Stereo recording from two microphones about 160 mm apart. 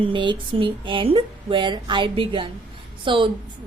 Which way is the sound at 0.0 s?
30° right (ahead or behind).